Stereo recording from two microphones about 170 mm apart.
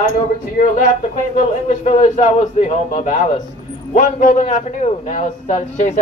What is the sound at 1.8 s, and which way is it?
Speech, 45° left (ahead or behind).